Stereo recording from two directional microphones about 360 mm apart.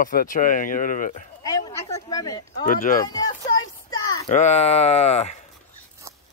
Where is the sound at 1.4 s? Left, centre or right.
Centre.